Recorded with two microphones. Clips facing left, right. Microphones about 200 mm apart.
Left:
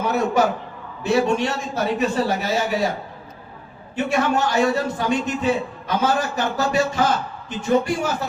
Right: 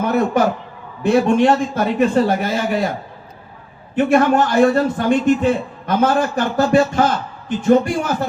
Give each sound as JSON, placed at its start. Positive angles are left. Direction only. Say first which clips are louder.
{"t": 0.0, "sound": "a man's voice", "louder": "right 3 dB", "side_deg": -55}
{"t": 3.9, "sound": "a man's voice", "louder": "right 7 dB", "side_deg": -55}